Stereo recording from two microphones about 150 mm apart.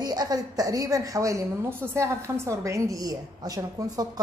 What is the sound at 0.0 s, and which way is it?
A woman's voice, 25° right (ahead or behind).